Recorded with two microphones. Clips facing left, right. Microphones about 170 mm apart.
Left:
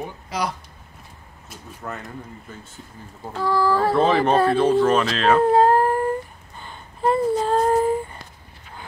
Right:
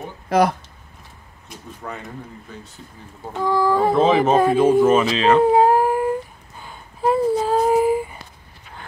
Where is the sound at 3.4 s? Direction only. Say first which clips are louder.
Right 2 dB; 20° right (ahead or behind).